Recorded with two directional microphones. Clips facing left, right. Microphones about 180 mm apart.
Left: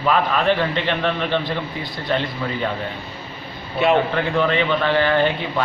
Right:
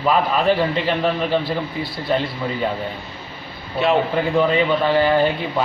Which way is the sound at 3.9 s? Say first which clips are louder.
Right 1 dB; 5° right (ahead or behind).